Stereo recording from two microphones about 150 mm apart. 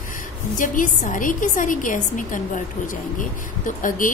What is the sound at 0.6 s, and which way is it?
A woman's voice, 60° left (ahead or behind).